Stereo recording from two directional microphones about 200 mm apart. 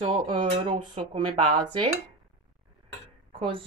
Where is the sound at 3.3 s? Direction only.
25° right (ahead or behind).